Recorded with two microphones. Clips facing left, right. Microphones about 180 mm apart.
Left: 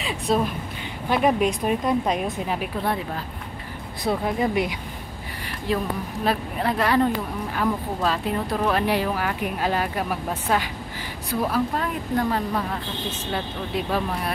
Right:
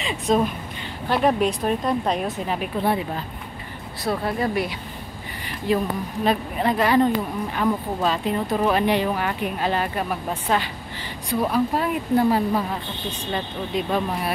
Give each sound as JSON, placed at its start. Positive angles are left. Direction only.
{"t": 0.0, "sound": "a sound", "side_deg": 0}
{"t": 1.0, "sound": "a woman's voice", "side_deg": 5}
{"t": 4.1, "sound": "speech", "side_deg": 15}
{"t": 5.7, "sound": "a woman's voice", "side_deg": 0}
{"t": 8.8, "sound": "a woman's voice", "side_deg": 5}
{"t": 11.7, "sound": "a woman's voice", "side_deg": -10}